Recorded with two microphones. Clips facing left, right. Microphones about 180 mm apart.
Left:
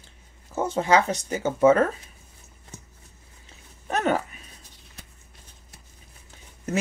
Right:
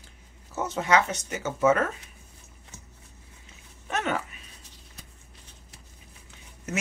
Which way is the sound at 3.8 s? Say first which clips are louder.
Left 5 dB; 40° left (ahead or behind).